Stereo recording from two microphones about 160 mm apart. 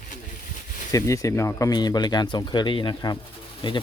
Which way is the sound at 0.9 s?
20° left (ahead or behind).